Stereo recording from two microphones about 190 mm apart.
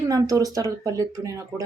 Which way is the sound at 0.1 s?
20° right (ahead or behind).